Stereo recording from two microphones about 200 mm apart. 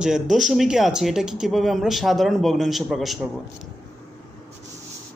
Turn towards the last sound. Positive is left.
turn(degrees=0)  # may be behind; listen again after turning